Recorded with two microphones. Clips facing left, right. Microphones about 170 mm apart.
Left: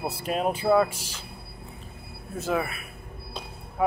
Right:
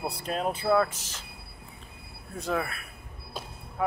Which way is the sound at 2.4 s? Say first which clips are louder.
Left 3 dB; 5° left (ahead or behind).